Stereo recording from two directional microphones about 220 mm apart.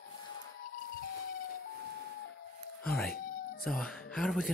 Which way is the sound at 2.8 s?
5° left (ahead or behind).